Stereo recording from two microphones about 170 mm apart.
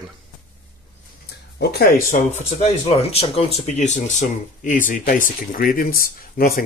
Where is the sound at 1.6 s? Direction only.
70° left (ahead or behind).